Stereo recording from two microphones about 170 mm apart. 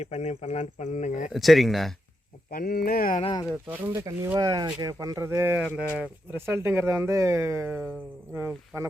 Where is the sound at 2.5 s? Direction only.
60° left (ahead or behind).